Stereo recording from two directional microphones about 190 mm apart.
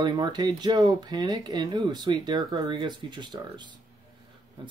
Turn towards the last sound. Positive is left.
turn(degrees=-25)  # may be behind; listen again after turning